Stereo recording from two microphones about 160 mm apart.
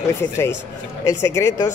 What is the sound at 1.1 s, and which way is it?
Speech, 20° left (ahead or behind).